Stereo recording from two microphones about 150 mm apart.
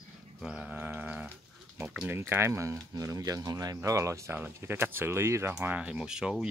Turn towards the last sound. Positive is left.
turn(degrees=-5)  # may be behind; listen again after turning